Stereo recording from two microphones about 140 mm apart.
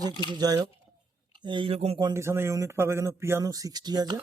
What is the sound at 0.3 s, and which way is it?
Speech, 30° right (ahead or behind).